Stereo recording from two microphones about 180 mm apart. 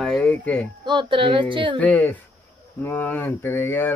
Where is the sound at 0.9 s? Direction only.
25° right (ahead or behind).